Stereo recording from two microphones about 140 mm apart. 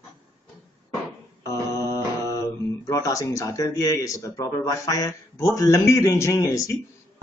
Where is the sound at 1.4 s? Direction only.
25° left (ahead or behind).